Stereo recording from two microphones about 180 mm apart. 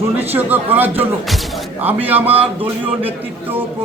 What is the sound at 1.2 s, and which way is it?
A man's voice, centre (ahead or behind).